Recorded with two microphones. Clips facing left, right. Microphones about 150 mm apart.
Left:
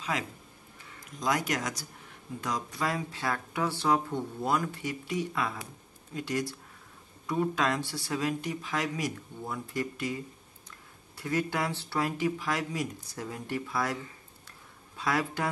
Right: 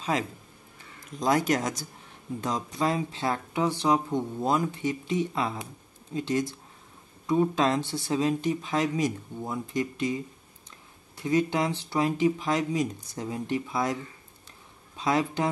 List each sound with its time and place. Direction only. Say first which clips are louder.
1.2 s speech: right 6 dB; 30° right (ahead or behind)
15.0 s speech: right 4 dB; 20° right (ahead or behind)